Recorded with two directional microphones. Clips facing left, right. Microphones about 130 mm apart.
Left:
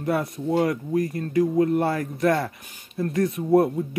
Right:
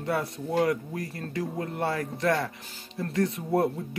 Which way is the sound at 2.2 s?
25° left (ahead or behind).